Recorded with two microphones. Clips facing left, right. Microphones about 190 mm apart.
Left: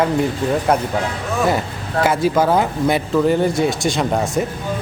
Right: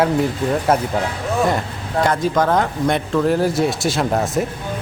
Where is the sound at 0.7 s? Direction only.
5° right (ahead or behind).